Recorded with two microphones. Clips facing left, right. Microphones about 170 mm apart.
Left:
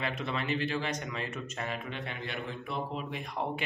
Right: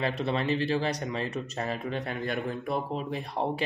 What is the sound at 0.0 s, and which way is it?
Speech, 35° right (ahead or behind).